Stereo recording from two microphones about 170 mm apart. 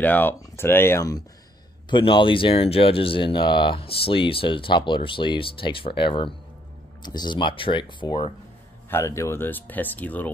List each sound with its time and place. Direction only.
0.0 s speech: 10° left (ahead or behind)
1.9 s speech: 30° left (ahead or behind)
8.9 s speech: 15° left (ahead or behind)